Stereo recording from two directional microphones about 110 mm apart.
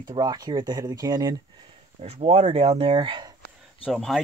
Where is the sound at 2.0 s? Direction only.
70° right (ahead or behind); by 3.3 s 45° right (ahead or behind).